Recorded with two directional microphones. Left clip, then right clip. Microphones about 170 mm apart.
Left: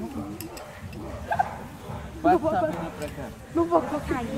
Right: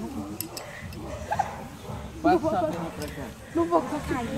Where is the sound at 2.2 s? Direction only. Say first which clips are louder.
Left 1 dB; 5° right (ahead or behind).